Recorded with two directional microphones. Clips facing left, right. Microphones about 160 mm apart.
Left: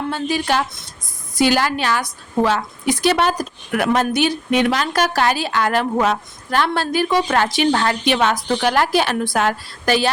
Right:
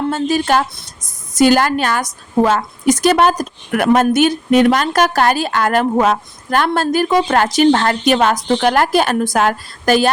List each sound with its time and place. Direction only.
0.1 s a woman's voice: 45° right (ahead or behind)
8.4 s a woman's voice: 25° right (ahead or behind)
8.6 s a woman's voice: 50° right (ahead or behind)